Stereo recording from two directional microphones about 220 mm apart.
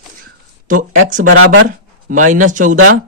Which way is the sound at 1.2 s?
55° right (ahead or behind).